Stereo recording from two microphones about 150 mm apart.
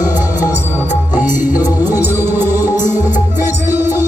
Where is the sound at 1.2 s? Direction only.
60° left (ahead or behind).